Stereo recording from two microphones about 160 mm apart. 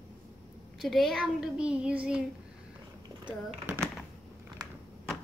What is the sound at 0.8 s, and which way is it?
Child singing, centre (ahead or behind).